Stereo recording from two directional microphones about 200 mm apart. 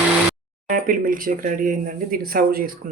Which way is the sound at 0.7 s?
45° right (ahead or behind).